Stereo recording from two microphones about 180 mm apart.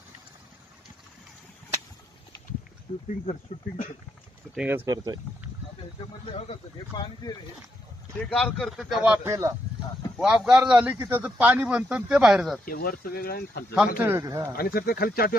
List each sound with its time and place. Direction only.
2.9 s speech: 30° left (ahead or behind)
3.3 s speech: 40° left (ahead or behind)
4.6 s speech: 10° right (ahead or behind)
6.3 s speech: 35° left (ahead or behind)
6.9 s speech: 25° left (ahead or behind)
8.3 s a man's voice: centre (ahead or behind)
12.6 s speech: 55° left (ahead or behind)
14.0 s a man's voice: 15° right (ahead or behind)
14.5 s speech: 55° left (ahead or behind)